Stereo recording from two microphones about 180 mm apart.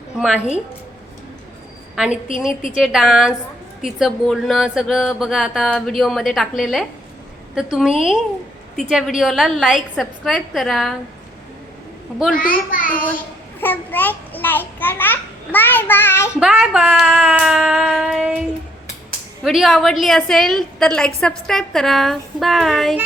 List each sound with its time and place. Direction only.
0.2 s a woman's voice: 5° right (ahead or behind)
2.3 s speech: centre (ahead or behind)
12.3 s a child's voice: 50° left (ahead or behind)
13.6 s a child's voice: 10° left (ahead or behind)
16.4 s speech: 5° right (ahead or behind)
19.5 s speech: centre (ahead or behind)